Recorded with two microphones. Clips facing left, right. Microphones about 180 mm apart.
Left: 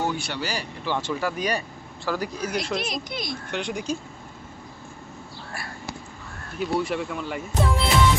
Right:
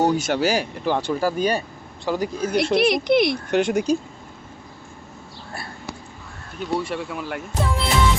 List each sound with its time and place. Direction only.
0.0 s speech: 40° right (ahead or behind); by 2.5 s 20° right (ahead or behind)
2.7 s speech: 70° right (ahead or behind)
3.5 s speech: 45° right (ahead or behind)
6.6 s speech: centre (ahead or behind)